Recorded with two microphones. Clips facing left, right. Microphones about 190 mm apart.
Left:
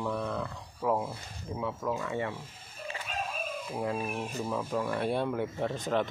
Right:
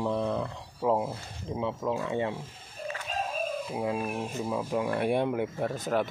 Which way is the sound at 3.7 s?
10° right (ahead or behind).